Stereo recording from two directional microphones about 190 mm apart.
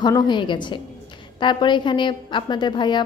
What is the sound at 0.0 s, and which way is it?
A woman's voice, 25° left (ahead or behind).